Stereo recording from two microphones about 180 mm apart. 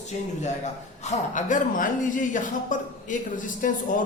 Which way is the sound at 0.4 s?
40° left (ahead or behind).